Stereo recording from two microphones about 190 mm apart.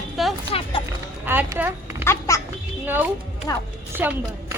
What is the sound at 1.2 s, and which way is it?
Speech, 10° right (ahead or behind).